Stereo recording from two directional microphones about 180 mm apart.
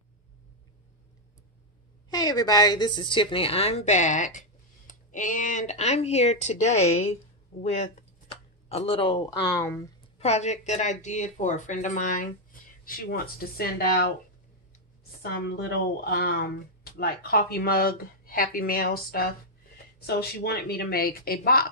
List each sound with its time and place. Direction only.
2.0 s speech: 20° left (ahead or behind)
10.1 s speech: 35° left (ahead or behind); by 14.0 s 55° left (ahead or behind)
15.2 s speech: 60° left (ahead or behind)